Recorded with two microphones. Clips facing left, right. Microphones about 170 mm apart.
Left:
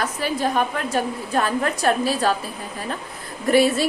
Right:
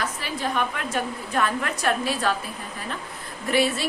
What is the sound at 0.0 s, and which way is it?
A woman's voice, 40° left (ahead or behind).